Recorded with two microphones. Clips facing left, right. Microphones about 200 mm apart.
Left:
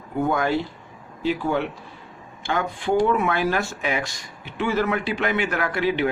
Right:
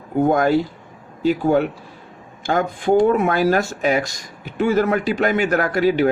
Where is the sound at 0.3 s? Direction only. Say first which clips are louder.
Right 6 dB; 45° right (ahead or behind).